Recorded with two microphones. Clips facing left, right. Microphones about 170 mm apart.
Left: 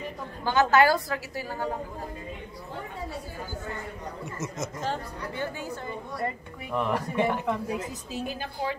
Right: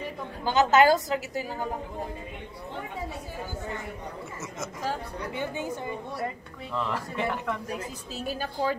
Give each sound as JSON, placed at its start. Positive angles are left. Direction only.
{"t": 0.4, "sound": "a woman's voice", "side_deg": -20}
{"t": 4.8, "sound": "a woman's voice", "side_deg": -10}
{"t": 6.7, "sound": "a woman's voice", "side_deg": 15}
{"t": 8.3, "sound": "a woman's voice", "side_deg": -40}